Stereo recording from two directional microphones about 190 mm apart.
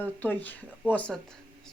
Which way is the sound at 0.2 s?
10° left (ahead or behind).